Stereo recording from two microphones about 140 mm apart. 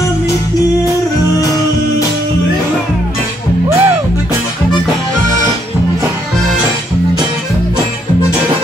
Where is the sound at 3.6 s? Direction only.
15° right (ahead or behind).